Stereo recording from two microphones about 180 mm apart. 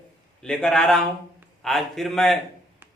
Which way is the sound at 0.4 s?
5° left (ahead or behind).